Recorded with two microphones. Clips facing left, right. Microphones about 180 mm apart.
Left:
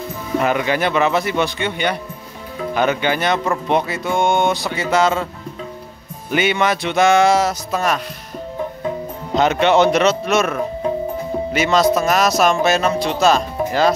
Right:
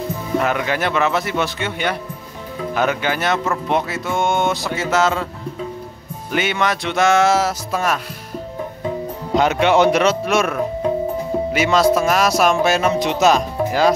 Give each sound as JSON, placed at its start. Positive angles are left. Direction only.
{"t": 0.4, "sound": "speech", "side_deg": 0}
{"t": 6.3, "sound": "speech", "side_deg": 0}
{"t": 9.3, "sound": "speech", "side_deg": -10}
{"t": 11.5, "sound": "speech", "side_deg": -5}